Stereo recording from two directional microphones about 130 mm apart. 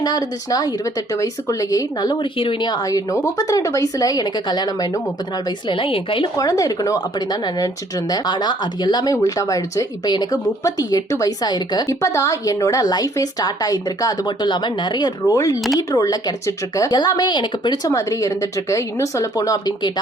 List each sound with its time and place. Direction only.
0.0 s a woman's voice: 30° left (ahead or behind)
6.3 s speech: 25° left (ahead or behind)
17.9 s speech: 25° left (ahead or behind)